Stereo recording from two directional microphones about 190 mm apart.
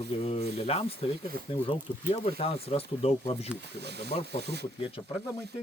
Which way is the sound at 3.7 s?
60° right (ahead or behind).